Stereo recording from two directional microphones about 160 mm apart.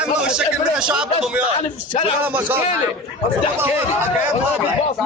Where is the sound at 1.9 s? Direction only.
30° left (ahead or behind).